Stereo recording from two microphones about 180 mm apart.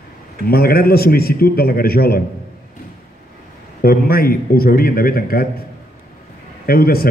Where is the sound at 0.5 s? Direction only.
55° left (ahead or behind).